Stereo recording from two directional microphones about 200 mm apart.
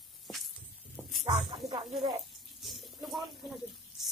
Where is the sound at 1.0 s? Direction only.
10° left (ahead or behind).